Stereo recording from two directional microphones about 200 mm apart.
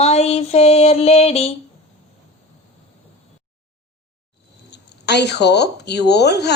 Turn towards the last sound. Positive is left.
turn(degrees=55)  # may be behind; listen again after turning